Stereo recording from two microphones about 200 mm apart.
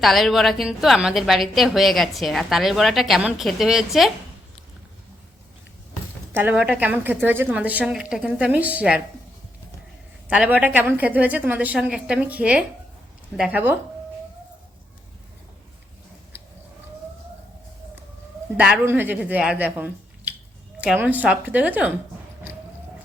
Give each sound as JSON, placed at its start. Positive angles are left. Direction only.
{"t": 0.0, "sound": "a woman's voice", "side_deg": 0}
{"t": 6.3, "sound": "a woman's voice", "side_deg": -10}
{"t": 10.2, "sound": "a woman's voice", "side_deg": -5}
{"t": 18.5, "sound": "a woman's voice", "side_deg": -10}